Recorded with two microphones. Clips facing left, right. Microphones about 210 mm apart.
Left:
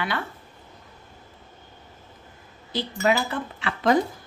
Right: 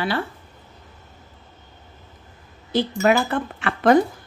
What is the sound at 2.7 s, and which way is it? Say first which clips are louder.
Speech: right 5 dB; 50° right (ahead or behind).